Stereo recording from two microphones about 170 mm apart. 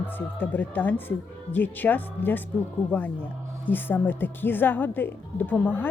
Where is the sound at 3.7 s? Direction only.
10° left (ahead or behind).